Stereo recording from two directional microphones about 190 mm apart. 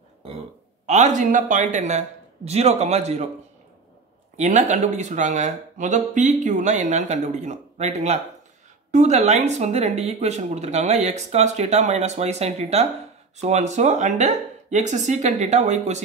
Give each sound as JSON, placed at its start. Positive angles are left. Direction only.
{"t": 0.8, "sound": "speech", "side_deg": -40}
{"t": 4.4, "sound": "speech", "side_deg": -40}